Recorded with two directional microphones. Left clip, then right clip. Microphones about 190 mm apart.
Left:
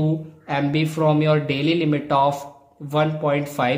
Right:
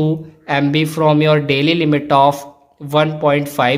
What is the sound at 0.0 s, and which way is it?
Speech, 25° right (ahead or behind).